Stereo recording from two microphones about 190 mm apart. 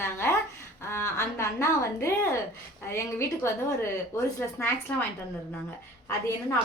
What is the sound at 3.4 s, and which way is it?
A woman's voice, 15° left (ahead or behind).